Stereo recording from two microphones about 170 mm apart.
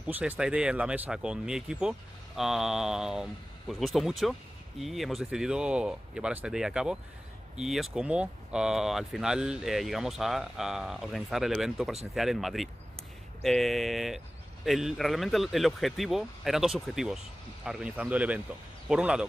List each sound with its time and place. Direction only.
0.0 s speech: 10° right (ahead or behind)